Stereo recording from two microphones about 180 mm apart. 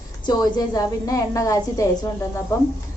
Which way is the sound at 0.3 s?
20° left (ahead or behind).